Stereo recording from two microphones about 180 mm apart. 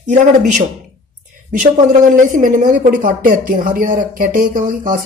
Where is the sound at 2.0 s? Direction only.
45° right (ahead or behind).